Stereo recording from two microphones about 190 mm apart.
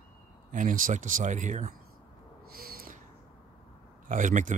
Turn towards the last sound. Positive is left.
turn(degrees=-40)  # may be behind; listen again after turning